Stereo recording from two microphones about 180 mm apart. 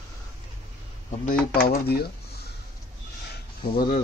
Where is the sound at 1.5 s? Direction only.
55° left (ahead or behind).